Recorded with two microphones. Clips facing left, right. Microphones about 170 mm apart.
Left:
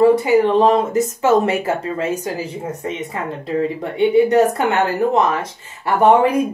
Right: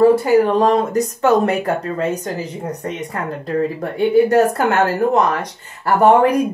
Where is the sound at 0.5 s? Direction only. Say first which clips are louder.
Left 1 dB; 25° left (ahead or behind).